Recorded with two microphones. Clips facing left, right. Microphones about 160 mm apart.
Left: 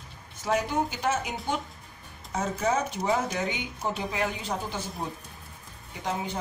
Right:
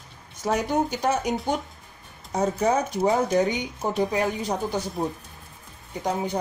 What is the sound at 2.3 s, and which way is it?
Speech, 35° right (ahead or behind).